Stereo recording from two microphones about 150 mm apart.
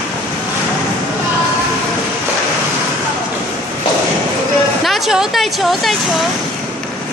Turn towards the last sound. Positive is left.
turn(degrees=0)  # may be behind; listen again after turning